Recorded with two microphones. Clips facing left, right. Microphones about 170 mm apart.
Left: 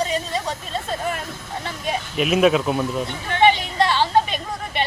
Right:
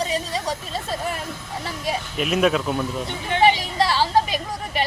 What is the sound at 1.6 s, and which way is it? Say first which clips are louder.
Speech: even; centre (ahead or behind).